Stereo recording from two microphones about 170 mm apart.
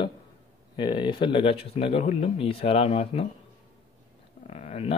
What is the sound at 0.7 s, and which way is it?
Speech, 30° left (ahead or behind).